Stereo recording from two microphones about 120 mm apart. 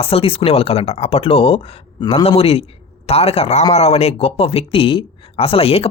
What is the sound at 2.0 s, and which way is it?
Speech, 35° left (ahead or behind).